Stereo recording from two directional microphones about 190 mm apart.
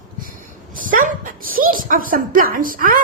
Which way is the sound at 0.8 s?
45° right (ahead or behind).